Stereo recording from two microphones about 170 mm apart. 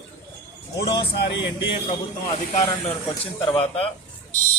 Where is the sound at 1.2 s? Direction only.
90° left.